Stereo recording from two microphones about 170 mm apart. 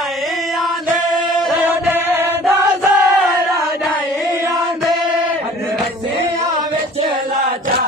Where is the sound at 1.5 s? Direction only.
10° right (ahead or behind).